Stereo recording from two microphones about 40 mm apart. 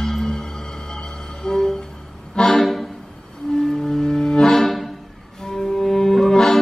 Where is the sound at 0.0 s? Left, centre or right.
Centre.